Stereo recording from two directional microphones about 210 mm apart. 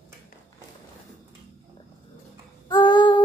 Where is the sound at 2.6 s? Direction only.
20° left (ahead or behind).